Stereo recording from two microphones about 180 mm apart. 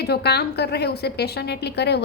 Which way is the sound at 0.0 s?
65° left (ahead or behind).